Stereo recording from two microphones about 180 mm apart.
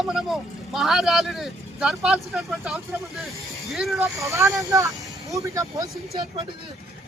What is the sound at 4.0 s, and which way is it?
Speech, 15° right (ahead or behind).